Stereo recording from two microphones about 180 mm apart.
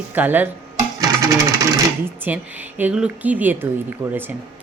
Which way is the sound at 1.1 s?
20° right (ahead or behind).